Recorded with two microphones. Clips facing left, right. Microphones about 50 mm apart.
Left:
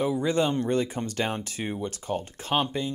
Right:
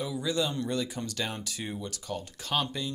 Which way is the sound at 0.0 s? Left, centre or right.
Left.